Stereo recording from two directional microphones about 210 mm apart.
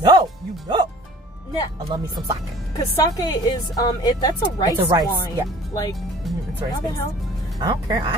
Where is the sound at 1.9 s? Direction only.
20° right (ahead or behind).